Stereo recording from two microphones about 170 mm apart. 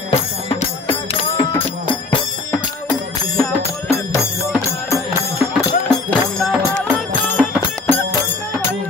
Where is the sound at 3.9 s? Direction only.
15° left (ahead or behind).